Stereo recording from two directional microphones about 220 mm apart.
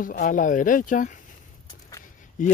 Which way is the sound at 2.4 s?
35° left (ahead or behind).